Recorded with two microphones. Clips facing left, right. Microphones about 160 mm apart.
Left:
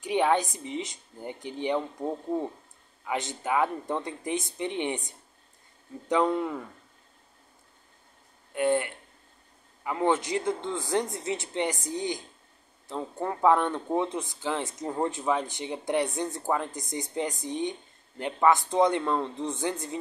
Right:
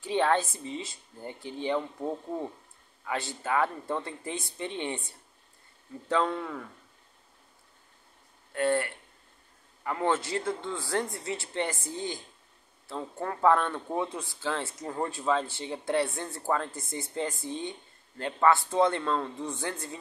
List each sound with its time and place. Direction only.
0.0 s a man's voice: 15° left (ahead or behind)
8.5 s a man's voice: 15° left (ahead or behind)